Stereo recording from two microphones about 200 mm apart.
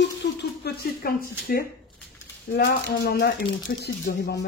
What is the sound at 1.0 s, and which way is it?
Speech, 50° left (ahead or behind).